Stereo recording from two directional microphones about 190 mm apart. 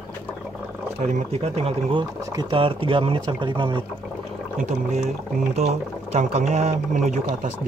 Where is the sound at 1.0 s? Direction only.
35° right (ahead or behind).